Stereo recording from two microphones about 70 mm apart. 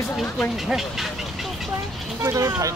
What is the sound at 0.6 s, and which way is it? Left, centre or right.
Speech, centre.